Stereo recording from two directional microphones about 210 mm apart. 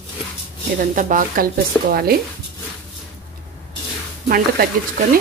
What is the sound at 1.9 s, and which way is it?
Stir, 45° right (ahead or behind).